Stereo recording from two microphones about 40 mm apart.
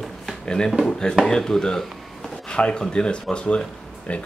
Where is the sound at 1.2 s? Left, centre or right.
Centre.